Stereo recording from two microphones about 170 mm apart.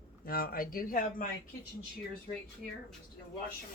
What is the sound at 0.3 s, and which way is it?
Speech, 60° left (ahead or behind).